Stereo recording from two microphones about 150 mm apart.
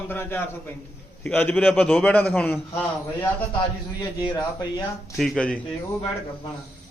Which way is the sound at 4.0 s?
25° left (ahead or behind).